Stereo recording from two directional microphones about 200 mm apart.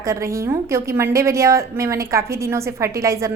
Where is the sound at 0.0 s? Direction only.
15° right (ahead or behind).